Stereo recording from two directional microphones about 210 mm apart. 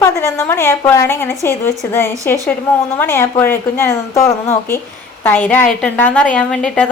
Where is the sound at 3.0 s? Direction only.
10° left (ahead or behind).